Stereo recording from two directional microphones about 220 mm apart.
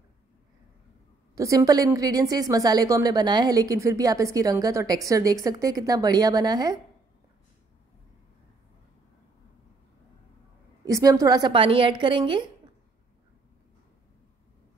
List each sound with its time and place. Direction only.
1.3 s a woman's voice: 15° right (ahead or behind)
10.9 s a woman's voice: 15° right (ahead or behind)